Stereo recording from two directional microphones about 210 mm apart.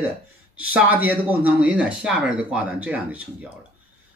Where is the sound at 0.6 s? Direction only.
5° right (ahead or behind).